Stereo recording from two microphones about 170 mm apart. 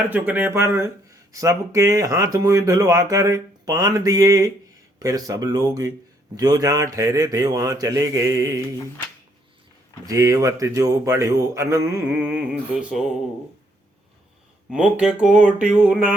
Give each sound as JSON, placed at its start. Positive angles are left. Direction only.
{"t": 0.1, "sound": "speech", "side_deg": -10}
{"t": 10.1, "sound": "a man's voice", "side_deg": -20}
{"t": 14.7, "sound": "a man's voice", "side_deg": -5}